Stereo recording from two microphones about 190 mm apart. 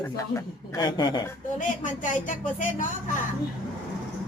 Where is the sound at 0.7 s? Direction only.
20° left (ahead or behind).